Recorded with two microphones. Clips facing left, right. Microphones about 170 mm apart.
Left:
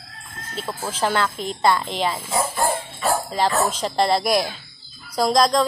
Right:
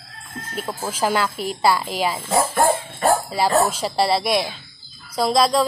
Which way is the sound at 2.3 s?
70° right (ahead or behind).